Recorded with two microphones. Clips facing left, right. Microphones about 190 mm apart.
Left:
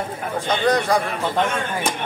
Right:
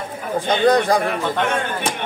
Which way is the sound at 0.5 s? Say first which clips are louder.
Right 4 dB; 30° right (ahead or behind).